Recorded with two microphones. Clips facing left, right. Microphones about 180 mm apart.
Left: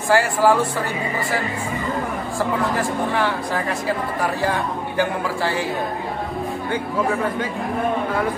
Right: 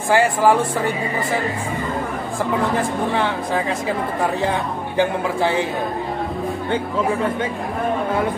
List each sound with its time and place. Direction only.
0.1 s speech: 20° right (ahead or behind)
3.2 s speech: 20° right (ahead or behind)